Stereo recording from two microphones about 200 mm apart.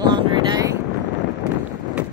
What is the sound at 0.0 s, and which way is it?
Vehicle, 20° right (ahead or behind).